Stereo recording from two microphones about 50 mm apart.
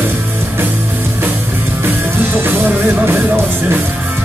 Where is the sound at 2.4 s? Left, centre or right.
Right.